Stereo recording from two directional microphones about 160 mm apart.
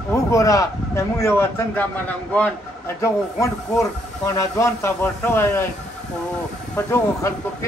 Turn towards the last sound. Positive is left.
turn(degrees=15)  # may be behind; listen again after turning